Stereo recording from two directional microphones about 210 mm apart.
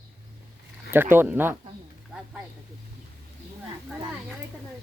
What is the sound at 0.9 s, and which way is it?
Speech, 10° right (ahead or behind).